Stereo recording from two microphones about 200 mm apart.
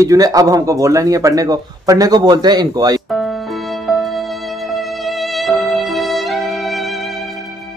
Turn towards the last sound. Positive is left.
turn(degrees=0)  # may be behind; listen again after turning